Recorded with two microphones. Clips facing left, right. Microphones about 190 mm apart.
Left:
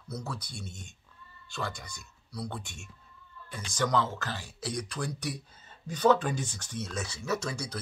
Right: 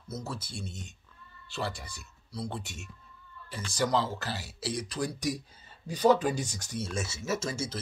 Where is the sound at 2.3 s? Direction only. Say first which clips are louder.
Right 1 dB; 25° right (ahead or behind).